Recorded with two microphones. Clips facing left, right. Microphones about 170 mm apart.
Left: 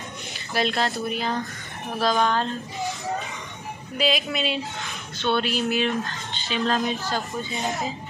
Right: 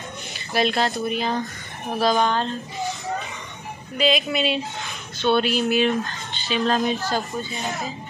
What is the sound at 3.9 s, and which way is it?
A woman's voice, 5° left (ahead or behind).